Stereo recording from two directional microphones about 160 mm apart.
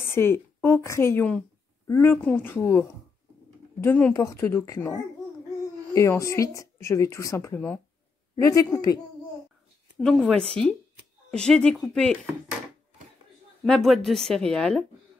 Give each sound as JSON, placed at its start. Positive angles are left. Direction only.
{"t": 0.0, "sound": "a woman's voice", "side_deg": 15}
{"t": 9.9, "sound": "speech", "side_deg": 0}
{"t": 13.7, "sound": "speech", "side_deg": 0}